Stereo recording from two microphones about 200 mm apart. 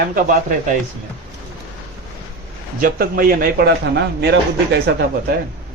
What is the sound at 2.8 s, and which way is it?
A man's voice, 45° right (ahead or behind).